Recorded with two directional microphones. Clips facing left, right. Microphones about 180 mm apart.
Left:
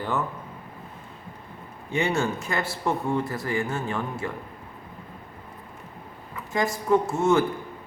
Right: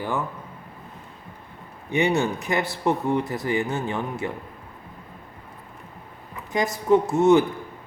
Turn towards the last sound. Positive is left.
turn(degrees=-20)  # may be behind; listen again after turning